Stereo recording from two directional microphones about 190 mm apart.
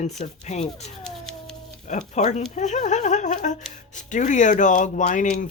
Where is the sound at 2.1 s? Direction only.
40° left (ahead or behind).